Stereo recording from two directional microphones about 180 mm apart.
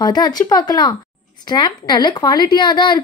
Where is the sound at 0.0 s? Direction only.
25° left (ahead or behind).